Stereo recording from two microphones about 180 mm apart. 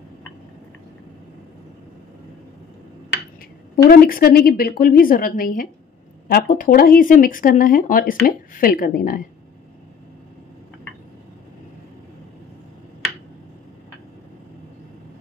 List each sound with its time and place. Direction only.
3.7 s a woman's voice: 55° left (ahead or behind)